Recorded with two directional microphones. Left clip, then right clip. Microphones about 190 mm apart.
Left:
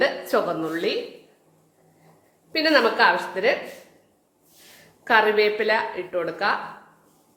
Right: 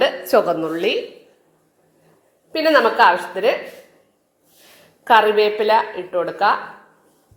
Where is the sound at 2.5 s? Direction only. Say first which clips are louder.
Right 4 dB; 5° right (ahead or behind).